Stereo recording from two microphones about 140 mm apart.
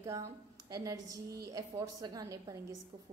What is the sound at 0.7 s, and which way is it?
A woman's voice, 25° right (ahead or behind).